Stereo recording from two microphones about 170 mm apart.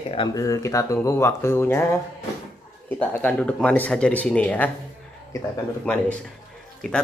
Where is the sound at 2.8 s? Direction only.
10° left (ahead or behind).